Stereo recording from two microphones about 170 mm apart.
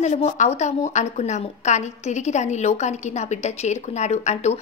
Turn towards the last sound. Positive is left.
turn(degrees=40)  # may be behind; listen again after turning